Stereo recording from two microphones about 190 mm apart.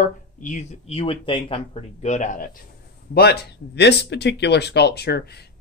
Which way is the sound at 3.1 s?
55° left (ahead or behind).